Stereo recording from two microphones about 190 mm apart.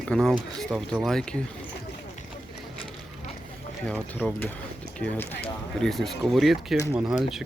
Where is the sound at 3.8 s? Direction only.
5° left (ahead or behind).